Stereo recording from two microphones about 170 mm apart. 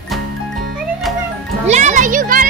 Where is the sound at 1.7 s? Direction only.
45° right (ahead or behind).